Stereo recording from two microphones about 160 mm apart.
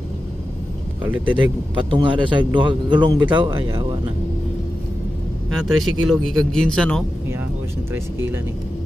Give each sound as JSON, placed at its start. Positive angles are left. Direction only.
{"t": 1.3, "sound": "a man's voice", "side_deg": -30}
{"t": 5.5, "sound": "speech", "side_deg": 0}
{"t": 7.9, "sound": "speech", "side_deg": -15}